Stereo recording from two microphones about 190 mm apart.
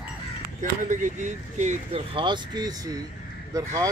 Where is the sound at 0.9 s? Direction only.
40° right (ahead or behind).